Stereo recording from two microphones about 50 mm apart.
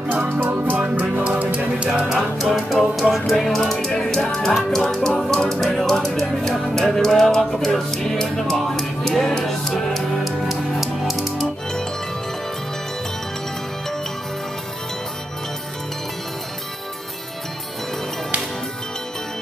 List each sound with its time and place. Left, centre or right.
0.1 s music: right
2.1 s music: centre